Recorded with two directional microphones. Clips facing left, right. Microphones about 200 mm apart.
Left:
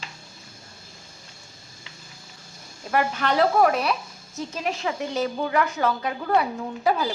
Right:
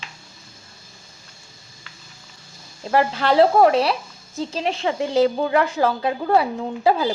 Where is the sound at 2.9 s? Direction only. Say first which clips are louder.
Right 6 dB; 30° right (ahead or behind).